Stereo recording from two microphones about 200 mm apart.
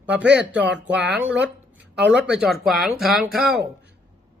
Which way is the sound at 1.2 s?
5° right (ahead or behind).